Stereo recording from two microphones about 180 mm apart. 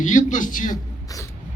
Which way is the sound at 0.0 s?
45° left (ahead or behind).